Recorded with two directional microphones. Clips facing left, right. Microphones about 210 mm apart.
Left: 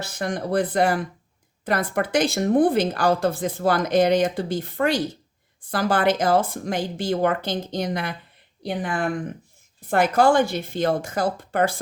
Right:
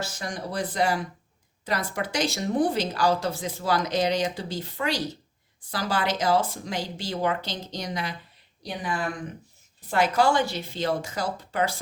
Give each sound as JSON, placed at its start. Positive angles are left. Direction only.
{"t": 0.0, "sound": "speech", "side_deg": 60}